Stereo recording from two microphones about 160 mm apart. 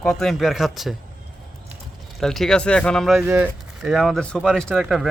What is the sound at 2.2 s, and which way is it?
Speech, centre (ahead or behind).